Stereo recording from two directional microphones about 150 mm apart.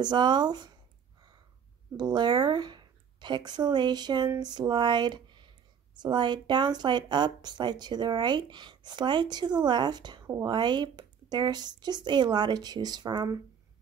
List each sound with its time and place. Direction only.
0.0 s speech: 30° right (ahead or behind)
2.0 s speech: 30° right (ahead or behind)